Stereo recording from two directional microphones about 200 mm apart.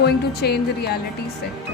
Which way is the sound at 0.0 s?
55° left (ahead or behind).